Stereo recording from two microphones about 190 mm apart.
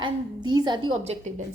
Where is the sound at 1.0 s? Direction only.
35° right (ahead or behind).